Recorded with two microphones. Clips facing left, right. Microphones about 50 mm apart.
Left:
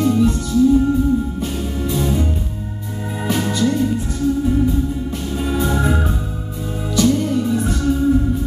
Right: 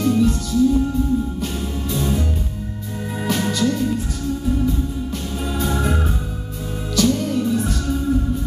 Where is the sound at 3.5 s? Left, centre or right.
Left.